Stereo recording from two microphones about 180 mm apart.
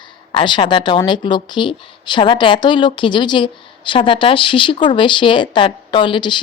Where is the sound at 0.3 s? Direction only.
25° left (ahead or behind).